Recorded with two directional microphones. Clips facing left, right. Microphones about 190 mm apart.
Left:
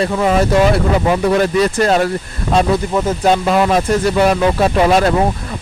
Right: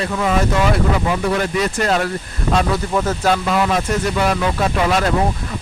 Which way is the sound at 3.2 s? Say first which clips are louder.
Left 6 dB; 30° left (ahead or behind).